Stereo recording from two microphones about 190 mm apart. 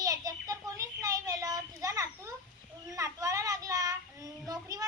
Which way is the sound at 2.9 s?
15° right (ahead or behind).